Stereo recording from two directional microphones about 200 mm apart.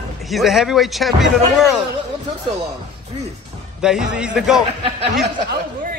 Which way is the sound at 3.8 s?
5° right (ahead or behind).